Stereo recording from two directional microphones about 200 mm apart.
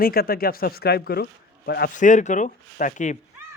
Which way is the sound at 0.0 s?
50° left (ahead or behind).